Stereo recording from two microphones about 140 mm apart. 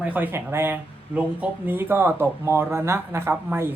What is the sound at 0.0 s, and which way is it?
Speech, 10° right (ahead or behind).